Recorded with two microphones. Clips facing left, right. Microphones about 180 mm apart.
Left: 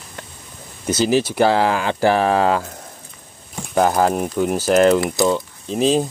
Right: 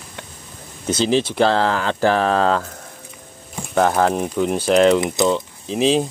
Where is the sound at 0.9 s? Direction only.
5° left (ahead or behind).